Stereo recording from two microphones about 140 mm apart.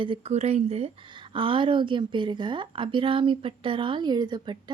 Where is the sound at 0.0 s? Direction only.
45° right (ahead or behind).